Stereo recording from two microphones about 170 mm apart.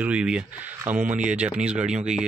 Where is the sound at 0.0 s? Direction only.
5° right (ahead or behind).